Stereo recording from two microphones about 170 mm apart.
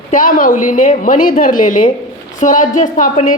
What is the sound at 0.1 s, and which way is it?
A woman's voice, 55° left (ahead or behind).